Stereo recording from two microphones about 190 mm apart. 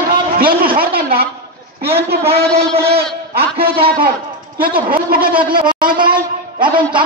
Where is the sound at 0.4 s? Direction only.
50° right (ahead or behind).